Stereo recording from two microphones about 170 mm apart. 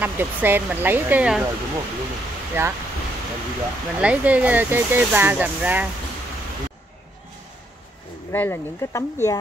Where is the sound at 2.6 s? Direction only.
15° right (ahead or behind).